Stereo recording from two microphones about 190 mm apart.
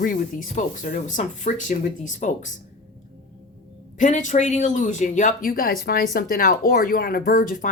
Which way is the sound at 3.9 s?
40° left (ahead or behind).